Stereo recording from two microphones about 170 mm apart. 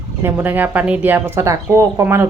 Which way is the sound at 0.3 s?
10° right (ahead or behind).